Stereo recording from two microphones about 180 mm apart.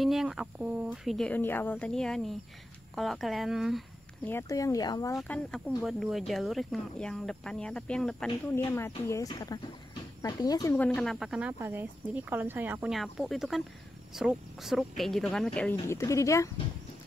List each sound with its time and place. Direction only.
0.0 s speech: centre (ahead or behind)
4.2 s speech: 15° left (ahead or behind)
5.1 s speech: 5° left (ahead or behind)
8.5 s speech: 15° left (ahead or behind)
15.9 s speech: 15° left (ahead or behind)